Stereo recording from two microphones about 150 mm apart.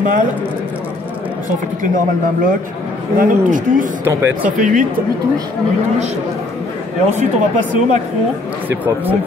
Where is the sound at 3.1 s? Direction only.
60° right (ahead or behind).